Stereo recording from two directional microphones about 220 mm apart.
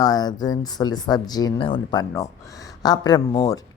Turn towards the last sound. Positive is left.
turn(degrees=15)  # may be behind; listen again after turning